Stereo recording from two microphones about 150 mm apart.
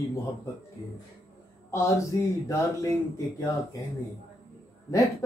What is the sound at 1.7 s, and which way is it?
Speech, 20° left (ahead or behind).